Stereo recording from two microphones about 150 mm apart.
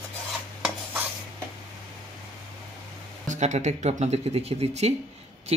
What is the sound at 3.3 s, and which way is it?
Speech, 50° right (ahead or behind).